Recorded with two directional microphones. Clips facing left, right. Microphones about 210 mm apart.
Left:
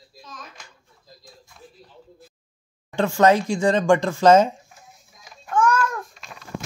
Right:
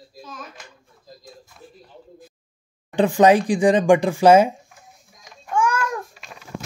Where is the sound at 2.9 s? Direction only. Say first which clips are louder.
Right 3 dB; 15° right (ahead or behind).